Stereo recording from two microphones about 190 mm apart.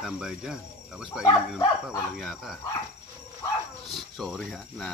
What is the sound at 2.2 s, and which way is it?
Speech, centre (ahead or behind).